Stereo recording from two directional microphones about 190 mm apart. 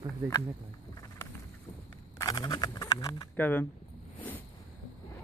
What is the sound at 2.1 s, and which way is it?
Speech, 20° left (ahead or behind).